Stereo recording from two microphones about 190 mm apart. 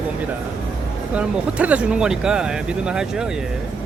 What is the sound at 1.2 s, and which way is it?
Speech, 5° right (ahead or behind).